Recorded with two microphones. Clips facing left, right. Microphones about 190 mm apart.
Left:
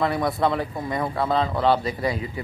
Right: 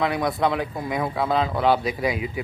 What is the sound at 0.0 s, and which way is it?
Speech, centre (ahead or behind).